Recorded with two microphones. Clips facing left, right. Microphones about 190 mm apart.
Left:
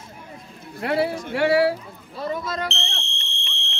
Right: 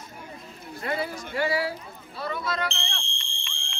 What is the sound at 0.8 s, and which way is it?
Speech, 70° left (ahead or behind).